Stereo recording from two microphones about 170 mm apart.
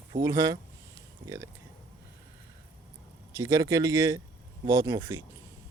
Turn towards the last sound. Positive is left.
turn(degrees=-20)  # may be behind; listen again after turning